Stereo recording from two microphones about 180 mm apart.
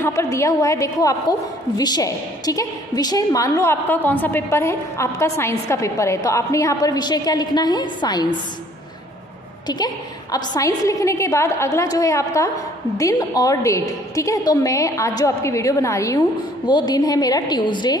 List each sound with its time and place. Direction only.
0.0 s a woman's voice: 15° left (ahead or behind)
9.7 s a woman's voice: 20° left (ahead or behind)